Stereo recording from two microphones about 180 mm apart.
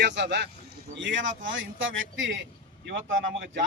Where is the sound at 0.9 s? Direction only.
90° right.